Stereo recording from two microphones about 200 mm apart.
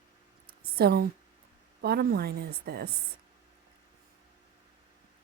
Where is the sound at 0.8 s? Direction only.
50° right (ahead or behind).